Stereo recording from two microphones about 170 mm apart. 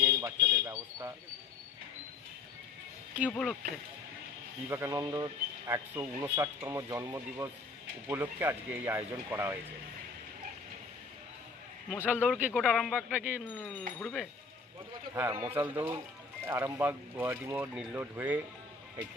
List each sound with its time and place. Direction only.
0.0 s a sound: 20° right (ahead or behind)
3.2 s speech: 10° left (ahead or behind)
4.7 s speech: 15° right (ahead or behind)
11.9 s speech: 10° right (ahead or behind)
13.1 s speech: 10° right (ahead or behind)
13.6 s speech: 5° left (ahead or behind)
15.4 s speech: 10° right (ahead or behind)